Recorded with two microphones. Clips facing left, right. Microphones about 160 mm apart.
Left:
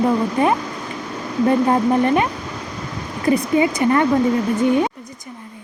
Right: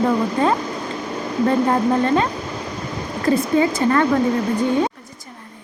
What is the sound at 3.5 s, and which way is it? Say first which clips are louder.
Speech: left 1 dB; 15° left (ahead or behind).